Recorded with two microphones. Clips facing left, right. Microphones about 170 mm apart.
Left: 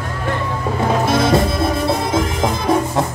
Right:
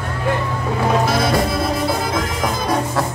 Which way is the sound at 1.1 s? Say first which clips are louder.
Left 3 dB; 25° left (ahead or behind).